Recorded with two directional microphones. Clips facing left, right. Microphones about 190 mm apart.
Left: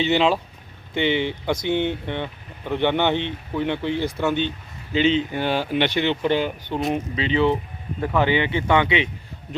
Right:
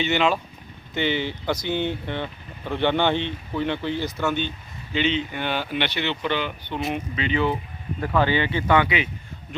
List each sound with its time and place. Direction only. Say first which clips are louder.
0.0 s speech: left 3 dB; 30° left (ahead or behind)
4.9 s speech: left 4 dB; 40° left (ahead or behind)
6.9 s speech: left 1 dB; 30° left (ahead or behind)